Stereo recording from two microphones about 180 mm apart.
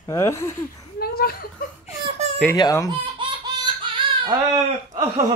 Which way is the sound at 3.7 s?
25° right (ahead or behind).